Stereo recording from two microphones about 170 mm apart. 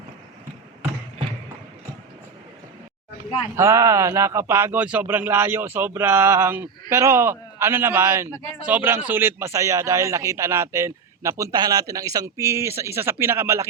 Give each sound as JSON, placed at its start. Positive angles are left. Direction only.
{"t": 3.5, "sound": "a man's voice", "side_deg": -15}